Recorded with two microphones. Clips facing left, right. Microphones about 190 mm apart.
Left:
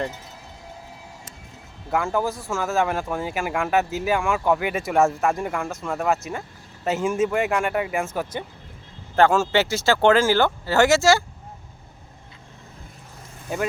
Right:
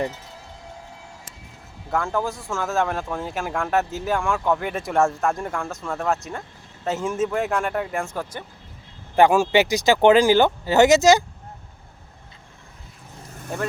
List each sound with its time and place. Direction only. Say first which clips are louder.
2.4 s speech: left 1 dB; centre (ahead or behind)
9.1 s speech: right 2 dB; 15° right (ahead or behind)